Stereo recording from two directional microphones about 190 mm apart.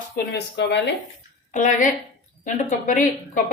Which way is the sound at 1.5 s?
45° left (ahead or behind).